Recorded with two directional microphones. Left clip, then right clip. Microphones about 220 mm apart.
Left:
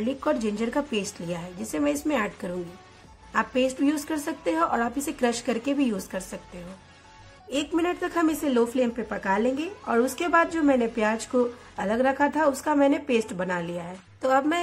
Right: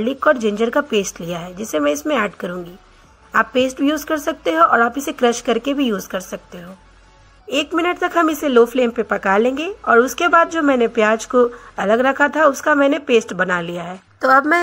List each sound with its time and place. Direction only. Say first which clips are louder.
0.0 s speech: right 10 dB; 15° right (ahead or behind)
7.4 s speech: right 8 dB; 15° right (ahead or behind)